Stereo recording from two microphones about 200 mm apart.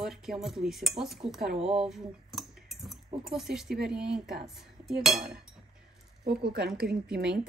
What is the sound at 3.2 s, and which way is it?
Speech, centre (ahead or behind).